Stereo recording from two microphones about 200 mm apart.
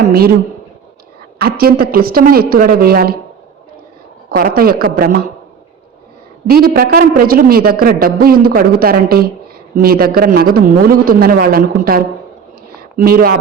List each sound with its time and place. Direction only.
0.1 s a woman's voice: 50° right (ahead or behind)
1.4 s a woman's voice: 50° right (ahead or behind)
4.3 s a woman's voice: 45° right (ahead or behind)
6.5 s a woman's voice: 50° right (ahead or behind)